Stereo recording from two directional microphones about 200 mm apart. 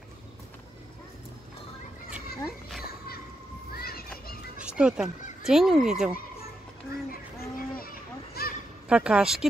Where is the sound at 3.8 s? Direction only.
50° left (ahead or behind).